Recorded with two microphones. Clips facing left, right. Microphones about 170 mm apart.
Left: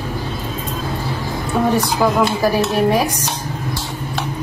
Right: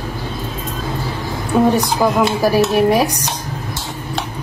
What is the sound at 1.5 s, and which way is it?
A woman's voice, 15° right (ahead or behind).